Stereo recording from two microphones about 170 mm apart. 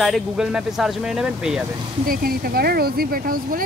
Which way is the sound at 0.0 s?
Centre (ahead or behind).